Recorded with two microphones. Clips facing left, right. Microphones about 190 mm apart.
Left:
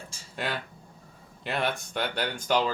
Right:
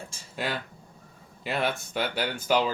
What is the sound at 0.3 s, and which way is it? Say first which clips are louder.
Speech: right 1 dB; centre (ahead or behind).